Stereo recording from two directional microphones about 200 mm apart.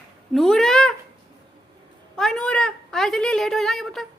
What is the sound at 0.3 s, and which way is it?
Cat, centre (ahead or behind).